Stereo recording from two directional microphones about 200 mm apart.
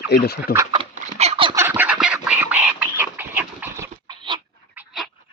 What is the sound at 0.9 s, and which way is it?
Fowl, 30° right (ahead or behind).